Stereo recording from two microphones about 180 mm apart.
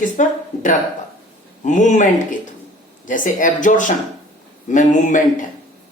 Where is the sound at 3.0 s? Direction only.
45° left (ahead or behind).